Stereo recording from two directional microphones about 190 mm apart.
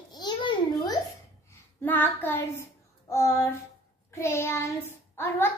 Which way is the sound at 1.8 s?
10° left (ahead or behind).